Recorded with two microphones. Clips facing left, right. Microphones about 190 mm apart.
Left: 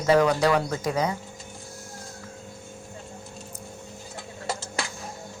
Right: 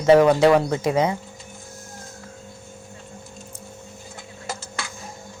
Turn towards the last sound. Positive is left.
turn(degrees=30)  # may be behind; listen again after turning